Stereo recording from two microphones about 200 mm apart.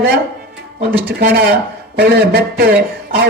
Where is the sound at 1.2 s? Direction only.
50° right (ahead or behind).